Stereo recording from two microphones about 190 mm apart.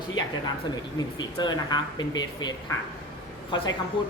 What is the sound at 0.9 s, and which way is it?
Speech, 20° left (ahead or behind).